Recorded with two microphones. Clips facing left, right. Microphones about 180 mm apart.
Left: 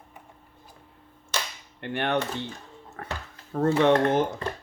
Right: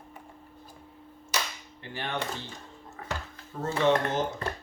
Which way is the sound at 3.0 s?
65° left (ahead or behind).